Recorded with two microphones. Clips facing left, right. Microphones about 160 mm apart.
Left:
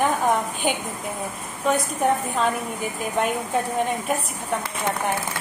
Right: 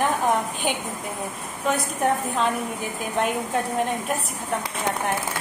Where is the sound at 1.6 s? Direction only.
Centre (ahead or behind).